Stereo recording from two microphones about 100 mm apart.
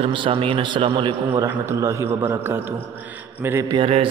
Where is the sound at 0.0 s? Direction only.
60° right (ahead or behind).